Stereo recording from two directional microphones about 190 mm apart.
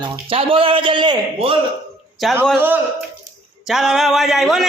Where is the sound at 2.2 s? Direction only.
Centre (ahead or behind).